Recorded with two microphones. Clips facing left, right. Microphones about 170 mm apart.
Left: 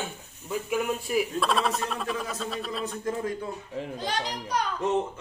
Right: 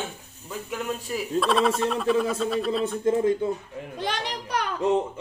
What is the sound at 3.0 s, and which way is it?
Speech, 25° right (ahead or behind).